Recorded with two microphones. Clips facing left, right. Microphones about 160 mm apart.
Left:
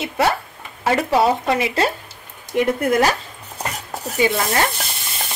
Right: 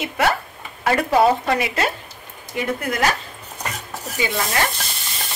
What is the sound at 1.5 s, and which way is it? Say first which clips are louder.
Speech: left 2 dB; 25° left (ahead or behind).